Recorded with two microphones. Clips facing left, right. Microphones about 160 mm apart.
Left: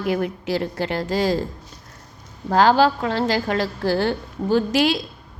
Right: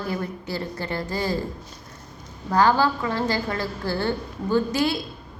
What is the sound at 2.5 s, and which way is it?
A woman's voice, 90° left.